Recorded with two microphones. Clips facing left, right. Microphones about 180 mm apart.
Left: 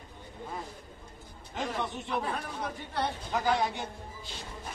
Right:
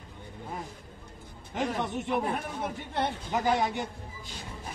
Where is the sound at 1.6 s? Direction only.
20° right (ahead or behind).